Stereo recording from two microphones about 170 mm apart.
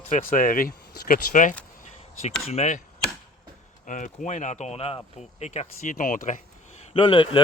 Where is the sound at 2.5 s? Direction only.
40° left (ahead or behind).